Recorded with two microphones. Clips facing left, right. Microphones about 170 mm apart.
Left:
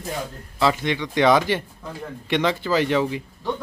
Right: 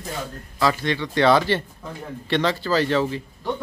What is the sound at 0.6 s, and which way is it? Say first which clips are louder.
Speech: left 1 dB; 15° left (ahead or behind).